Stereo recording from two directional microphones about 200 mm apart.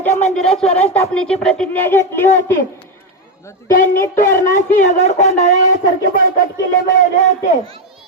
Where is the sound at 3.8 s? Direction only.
40° left (ahead or behind).